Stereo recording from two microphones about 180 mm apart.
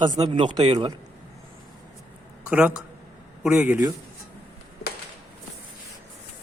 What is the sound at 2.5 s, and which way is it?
A man's voice, 5° right (ahead or behind).